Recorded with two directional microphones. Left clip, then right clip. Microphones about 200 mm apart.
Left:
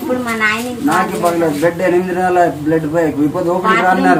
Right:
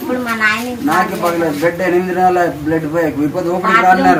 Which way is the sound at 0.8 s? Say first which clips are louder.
Even; centre (ahead or behind).